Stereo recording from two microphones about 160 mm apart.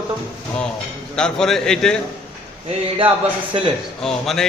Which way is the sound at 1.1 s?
5° left (ahead or behind).